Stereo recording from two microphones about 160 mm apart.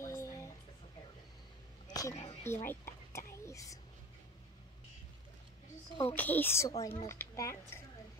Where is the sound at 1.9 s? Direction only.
20° left (ahead or behind).